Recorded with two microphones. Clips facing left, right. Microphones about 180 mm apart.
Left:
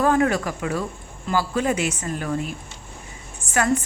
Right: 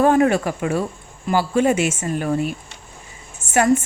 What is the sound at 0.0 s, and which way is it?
A woman's voice, 20° right (ahead or behind).